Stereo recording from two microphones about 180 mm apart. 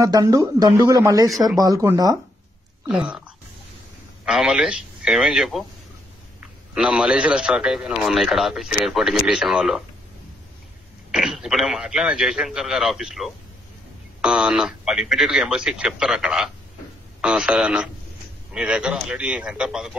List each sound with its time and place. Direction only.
0.0 s speech: 20° right (ahead or behind)
2.9 s speech: 5° right (ahead or behind)
6.7 s a man's voice: 5° right (ahead or behind)
11.1 s a man's voice: centre (ahead or behind)